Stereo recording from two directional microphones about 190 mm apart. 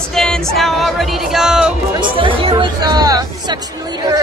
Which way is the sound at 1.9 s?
25° right (ahead or behind).